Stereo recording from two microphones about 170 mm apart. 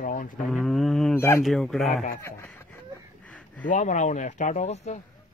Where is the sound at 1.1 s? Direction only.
15° left (ahead or behind).